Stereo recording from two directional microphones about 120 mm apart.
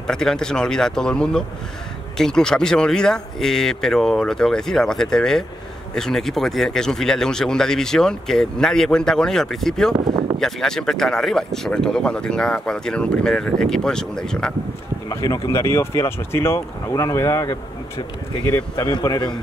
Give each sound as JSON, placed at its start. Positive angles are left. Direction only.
{"t": 0.0, "sound": "speech", "side_deg": 5}
{"t": 9.9, "sound": "a sound", "side_deg": -40}
{"t": 10.4, "sound": "speech", "side_deg": 5}
{"t": 15.0, "sound": "speech", "side_deg": 30}
{"t": 18.9, "sound": "a man's voice", "side_deg": 35}